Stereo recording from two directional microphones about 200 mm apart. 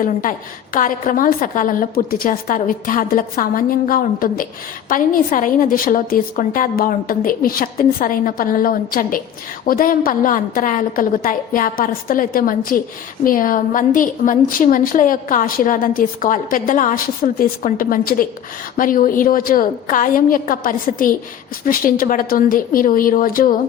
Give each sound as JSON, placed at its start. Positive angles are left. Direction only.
{"t": 0.0, "sound": "a woman's voice", "side_deg": 40}